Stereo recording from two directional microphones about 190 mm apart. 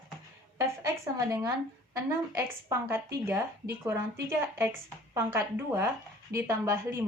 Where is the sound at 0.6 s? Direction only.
15° right (ahead or behind).